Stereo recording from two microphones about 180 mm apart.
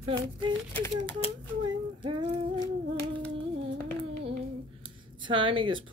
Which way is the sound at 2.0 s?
25° right (ahead or behind).